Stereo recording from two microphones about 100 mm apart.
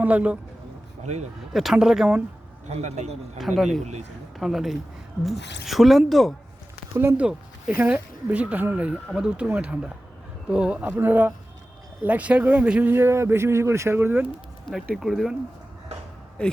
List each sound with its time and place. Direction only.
0.0 s speech: 15° right (ahead or behind)
1.5 s speech: 5° right (ahead or behind)
2.6 s a man's voice: 90° right
3.3 s speech: centre (ahead or behind)
6.9 s speech: 25° right (ahead or behind)
7.2 s speech: 10° right (ahead or behind)
12.9 s speech: 25° right (ahead or behind)
14.7 s speech: centre (ahead or behind)
16.4 s speech: 10° left (ahead or behind)